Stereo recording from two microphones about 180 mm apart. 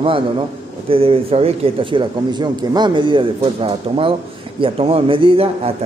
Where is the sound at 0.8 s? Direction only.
30° right (ahead or behind).